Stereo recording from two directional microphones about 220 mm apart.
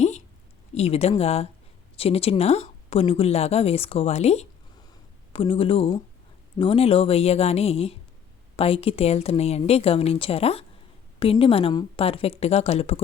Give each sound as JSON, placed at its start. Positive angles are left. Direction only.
{"t": 0.7, "sound": "speech", "side_deg": 30}